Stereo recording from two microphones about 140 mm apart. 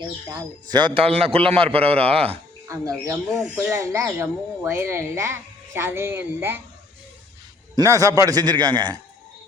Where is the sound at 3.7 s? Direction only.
20° right (ahead or behind).